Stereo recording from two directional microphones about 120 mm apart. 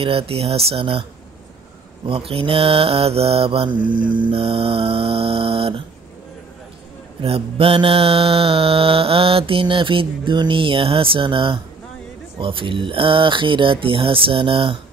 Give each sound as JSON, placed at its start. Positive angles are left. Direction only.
{"t": 0.0, "sound": "mantra", "side_deg": -55}
{"t": 2.0, "sound": "mantra", "side_deg": -50}
{"t": 7.2, "sound": "mantra", "side_deg": -55}